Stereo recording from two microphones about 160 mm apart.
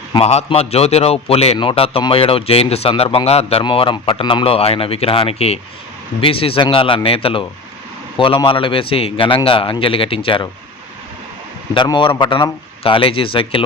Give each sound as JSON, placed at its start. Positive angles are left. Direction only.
{"t": 0.1, "sound": "speech", "side_deg": 40}
{"t": 11.7, "sound": "speech", "side_deg": 30}